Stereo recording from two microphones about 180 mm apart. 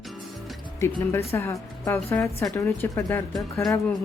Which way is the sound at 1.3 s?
15° left (ahead or behind).